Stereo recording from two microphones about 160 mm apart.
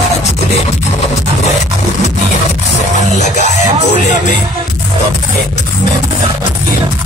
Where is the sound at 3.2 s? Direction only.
50° left (ahead or behind).